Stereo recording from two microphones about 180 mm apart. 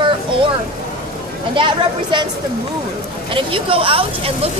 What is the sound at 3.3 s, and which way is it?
Speech, 30° right (ahead or behind).